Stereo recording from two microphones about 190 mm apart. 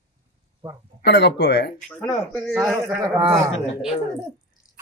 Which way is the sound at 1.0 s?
60° left (ahead or behind).